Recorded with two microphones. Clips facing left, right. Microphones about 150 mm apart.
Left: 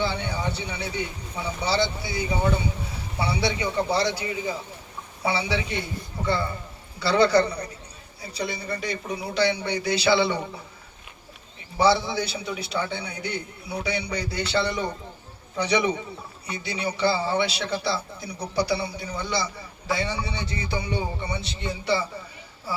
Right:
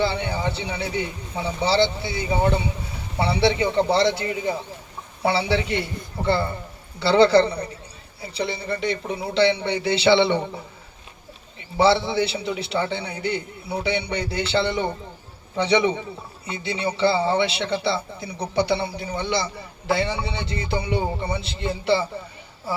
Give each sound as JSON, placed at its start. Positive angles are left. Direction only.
{"t": 0.0, "sound": "a man's voice", "side_deg": -30}
{"t": 5.2, "sound": "a man's voice", "side_deg": -30}
{"t": 5.6, "sound": "a man's voice", "side_deg": -65}
{"t": 6.2, "sound": "a man's voice", "side_deg": -30}
{"t": 11.8, "sound": "a man's voice", "side_deg": -25}